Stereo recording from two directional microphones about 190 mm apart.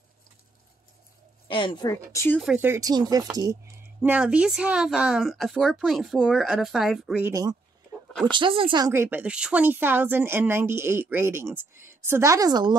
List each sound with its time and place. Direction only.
1.5 s a woman's voice: 25° left (ahead or behind)
2.1 s speech: 10° left (ahead or behind)
2.4 s speech: 10° right (ahead or behind)
7.2 s a woman's voice: 20° right (ahead or behind)